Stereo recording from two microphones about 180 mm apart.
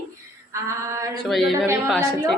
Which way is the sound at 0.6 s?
15° right (ahead or behind).